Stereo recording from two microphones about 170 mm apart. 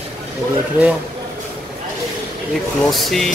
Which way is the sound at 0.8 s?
10° right (ahead or behind).